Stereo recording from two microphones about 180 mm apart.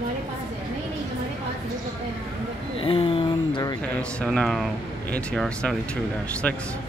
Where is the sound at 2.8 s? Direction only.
30° left (ahead or behind).